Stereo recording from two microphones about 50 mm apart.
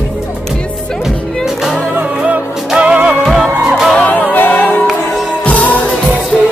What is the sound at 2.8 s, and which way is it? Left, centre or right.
Music, right.